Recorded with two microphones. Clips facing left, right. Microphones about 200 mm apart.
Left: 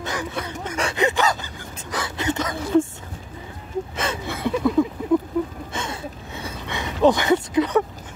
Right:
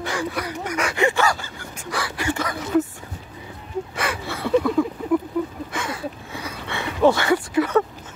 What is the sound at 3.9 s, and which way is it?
Speech, 20° left (ahead or behind).